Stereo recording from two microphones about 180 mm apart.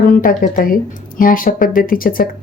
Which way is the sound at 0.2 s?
50° left (ahead or behind).